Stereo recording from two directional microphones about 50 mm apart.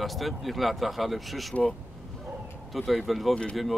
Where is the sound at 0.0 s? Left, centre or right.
Centre.